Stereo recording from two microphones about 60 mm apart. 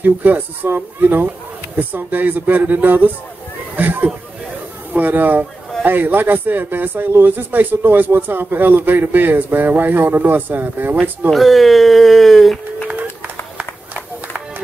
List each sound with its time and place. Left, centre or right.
0.0 s speech: right
11.2 s speech: centre
12.9 s a sound: right
13.6 s run: right